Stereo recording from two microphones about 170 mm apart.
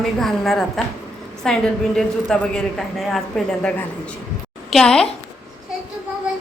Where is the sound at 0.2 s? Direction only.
Centre (ahead or behind).